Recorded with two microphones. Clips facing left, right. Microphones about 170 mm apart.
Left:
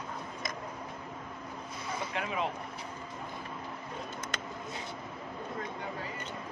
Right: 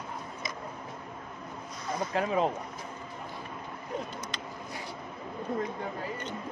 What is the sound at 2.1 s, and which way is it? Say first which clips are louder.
Speech: right 8 dB; 35° right (ahead or behind).